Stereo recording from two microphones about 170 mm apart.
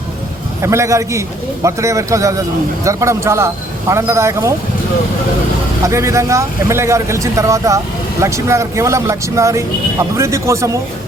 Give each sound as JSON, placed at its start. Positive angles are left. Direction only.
{"t": 0.6, "sound": "a man's voice", "side_deg": -15}
{"t": 5.8, "sound": "speech", "side_deg": -15}